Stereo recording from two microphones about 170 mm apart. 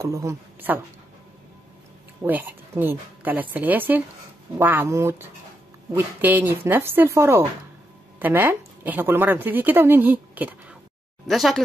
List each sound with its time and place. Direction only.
0.0 s a woman's voice: 15° right (ahead or behind)
2.2 s a woman's voice: 10° right (ahead or behind)